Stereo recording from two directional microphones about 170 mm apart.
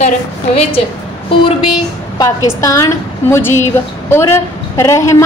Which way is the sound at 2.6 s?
20° left (ahead or behind).